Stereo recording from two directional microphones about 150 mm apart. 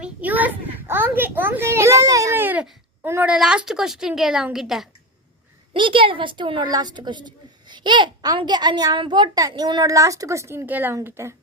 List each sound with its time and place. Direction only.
0.0 s a sound: 10° right (ahead or behind)
3.0 s a woman's voice: 15° right (ahead or behind)
5.7 s a woman's voice: 35° right (ahead or behind); by 11.3 s 20° right (ahead or behind)